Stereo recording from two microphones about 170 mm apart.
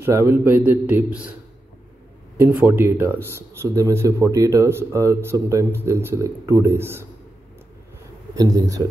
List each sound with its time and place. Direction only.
0.0 s speech: 15° right (ahead or behind)
2.3 s speech: 15° right (ahead or behind)
8.4 s a man's voice: 20° right (ahead or behind)